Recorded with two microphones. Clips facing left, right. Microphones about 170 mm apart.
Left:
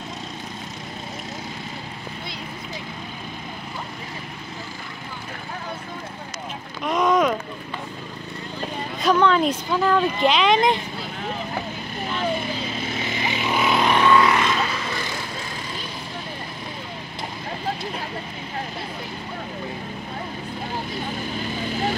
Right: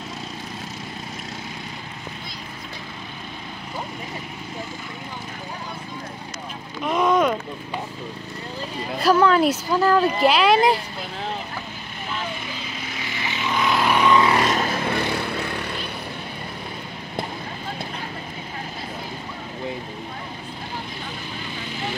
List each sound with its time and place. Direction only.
6.8 s a sound: centre (ahead or behind)
9.0 s speech: 5° right (ahead or behind)
12.8 s vehicle: 25° left (ahead or behind); by 14.2 s 10° right (ahead or behind)
14.2 s vehicle: 35° right (ahead or behind); by 15.7 s 65° right (ahead or behind)